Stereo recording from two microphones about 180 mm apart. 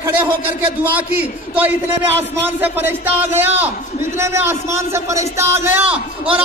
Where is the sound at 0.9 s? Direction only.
10° right (ahead or behind).